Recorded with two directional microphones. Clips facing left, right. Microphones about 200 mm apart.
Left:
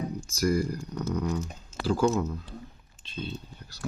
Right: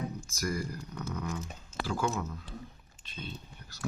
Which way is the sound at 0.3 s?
30° left (ahead or behind).